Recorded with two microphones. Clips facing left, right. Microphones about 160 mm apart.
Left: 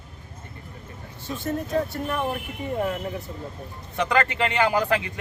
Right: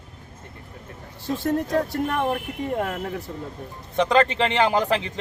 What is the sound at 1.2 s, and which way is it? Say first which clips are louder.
Speech: right 5 dB; 80° right.